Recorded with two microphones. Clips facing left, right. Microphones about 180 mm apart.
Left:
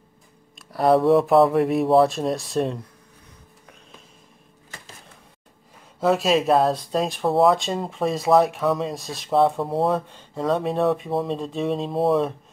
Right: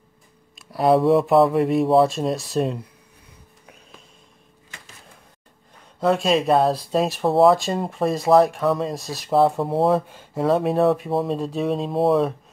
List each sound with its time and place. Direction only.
0.6 s speech: centre (ahead or behind)
4.6 s a sound: 35° left (ahead or behind)
5.9 s speech: centre (ahead or behind)